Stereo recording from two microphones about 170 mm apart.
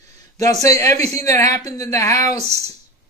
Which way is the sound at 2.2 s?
40° right (ahead or behind).